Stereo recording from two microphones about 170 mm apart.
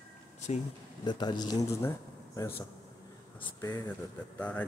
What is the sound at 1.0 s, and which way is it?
Speech, 25° left (ahead or behind).